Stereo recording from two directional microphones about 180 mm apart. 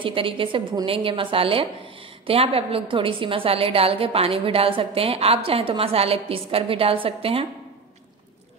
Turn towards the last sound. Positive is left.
turn(degrees=-30)  # may be behind; listen again after turning